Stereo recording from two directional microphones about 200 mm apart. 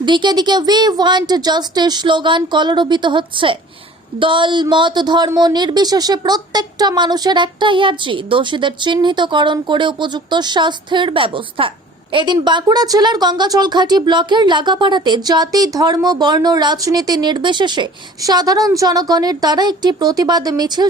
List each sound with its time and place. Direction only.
0.0 s a woman's voice: 25° right (ahead or behind)